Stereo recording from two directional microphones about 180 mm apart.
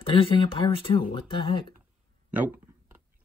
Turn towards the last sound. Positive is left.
turn(degrees=-10)  # may be behind; listen again after turning